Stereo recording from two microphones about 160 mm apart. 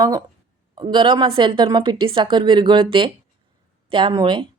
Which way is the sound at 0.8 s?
30° right (ahead or behind).